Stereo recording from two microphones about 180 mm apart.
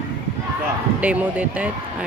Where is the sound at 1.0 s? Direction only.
10° right (ahead or behind).